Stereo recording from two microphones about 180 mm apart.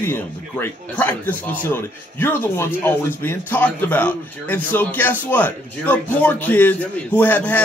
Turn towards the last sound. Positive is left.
turn(degrees=10)  # may be behind; listen again after turning